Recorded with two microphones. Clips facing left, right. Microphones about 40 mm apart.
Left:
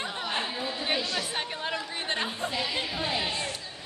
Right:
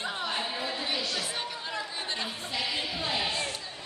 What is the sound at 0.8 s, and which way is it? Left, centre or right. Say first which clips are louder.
Chatter: left 2 dB; left.